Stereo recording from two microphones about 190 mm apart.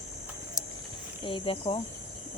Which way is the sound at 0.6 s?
20° left (ahead or behind).